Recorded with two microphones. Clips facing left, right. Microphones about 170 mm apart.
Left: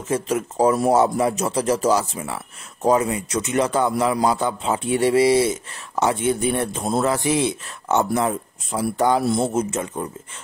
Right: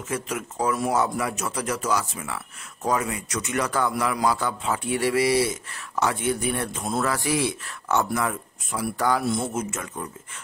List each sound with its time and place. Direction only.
0.1 s a man's voice: 30° left (ahead or behind)